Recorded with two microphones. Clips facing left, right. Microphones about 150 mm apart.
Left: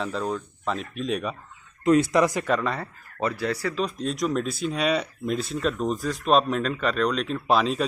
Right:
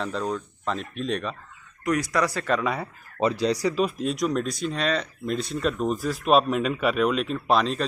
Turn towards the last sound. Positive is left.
turn(degrees=0)  # may be behind; listen again after turning